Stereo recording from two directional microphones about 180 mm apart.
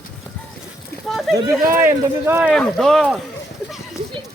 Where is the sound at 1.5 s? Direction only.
15° right (ahead or behind).